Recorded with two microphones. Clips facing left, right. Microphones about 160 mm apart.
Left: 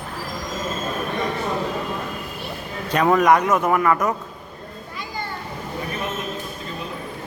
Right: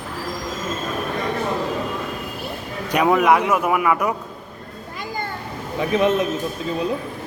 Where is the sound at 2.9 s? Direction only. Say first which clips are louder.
Even; 10° right (ahead or behind).